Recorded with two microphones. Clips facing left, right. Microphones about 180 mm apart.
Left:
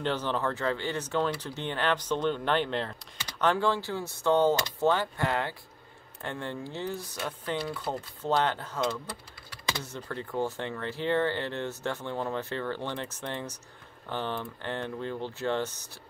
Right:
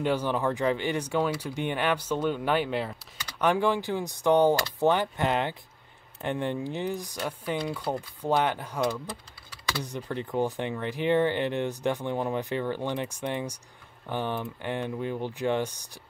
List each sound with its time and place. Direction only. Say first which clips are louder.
0.0 s speech: right 3 dB; 10° right (ahead or behind)